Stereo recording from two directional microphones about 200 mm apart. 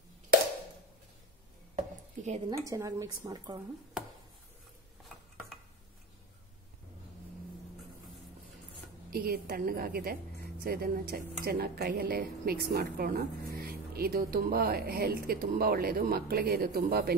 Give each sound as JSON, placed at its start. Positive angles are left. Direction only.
{"t": 1.8, "sound": "chopping", "side_deg": -35}
{"t": 2.5, "sound": "speech", "side_deg": -15}
{"t": 9.1, "sound": "a woman's voice", "side_deg": -50}